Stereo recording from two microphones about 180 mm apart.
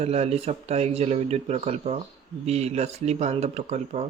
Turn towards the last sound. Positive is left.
turn(degrees=-40)  # may be behind; listen again after turning